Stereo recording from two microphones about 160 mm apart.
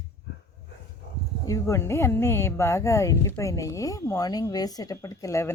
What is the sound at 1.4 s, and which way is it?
Speech, 20° left (ahead or behind).